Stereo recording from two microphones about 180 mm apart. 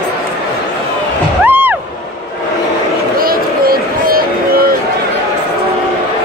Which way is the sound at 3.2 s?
55° right (ahead or behind).